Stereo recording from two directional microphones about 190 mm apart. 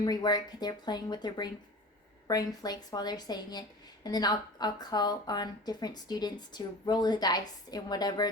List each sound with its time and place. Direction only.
0.0 s speech: 20° left (ahead or behind)